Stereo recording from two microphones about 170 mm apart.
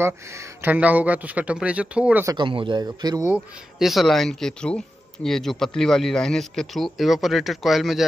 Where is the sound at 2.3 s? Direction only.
30° right (ahead or behind).